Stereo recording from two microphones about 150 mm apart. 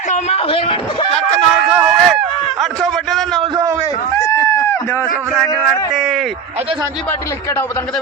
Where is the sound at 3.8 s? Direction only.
20° left (ahead or behind).